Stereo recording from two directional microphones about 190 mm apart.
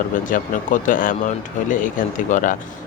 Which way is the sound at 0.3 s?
45° left (ahead or behind).